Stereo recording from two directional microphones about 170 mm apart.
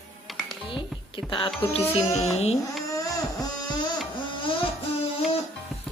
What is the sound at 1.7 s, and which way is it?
Speech, 35° left (ahead or behind).